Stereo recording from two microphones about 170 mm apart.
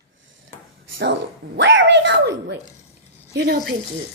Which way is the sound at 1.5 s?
90° right.